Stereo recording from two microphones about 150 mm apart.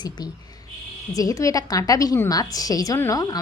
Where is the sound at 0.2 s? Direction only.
30° left (ahead or behind).